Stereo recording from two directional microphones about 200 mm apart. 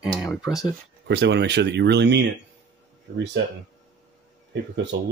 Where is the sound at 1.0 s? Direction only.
60° right (ahead or behind).